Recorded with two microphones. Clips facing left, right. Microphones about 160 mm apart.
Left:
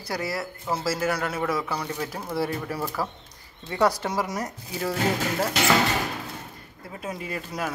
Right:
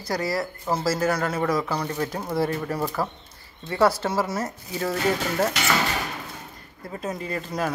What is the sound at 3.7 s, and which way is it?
Speech, 15° left (ahead or behind).